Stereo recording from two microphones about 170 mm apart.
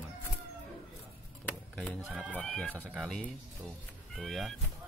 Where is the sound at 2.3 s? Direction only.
5° left (ahead or behind).